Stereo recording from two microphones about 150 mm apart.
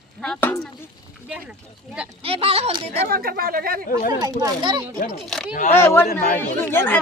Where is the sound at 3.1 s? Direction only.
85° right.